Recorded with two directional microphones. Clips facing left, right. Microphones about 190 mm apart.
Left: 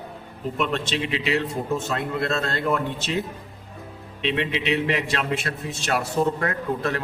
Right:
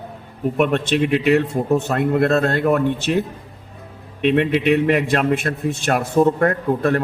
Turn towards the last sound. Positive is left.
turn(degrees=-55)  # may be behind; listen again after turning